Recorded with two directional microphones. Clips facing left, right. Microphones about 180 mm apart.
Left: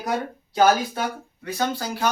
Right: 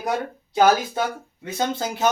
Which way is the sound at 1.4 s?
20° right (ahead or behind).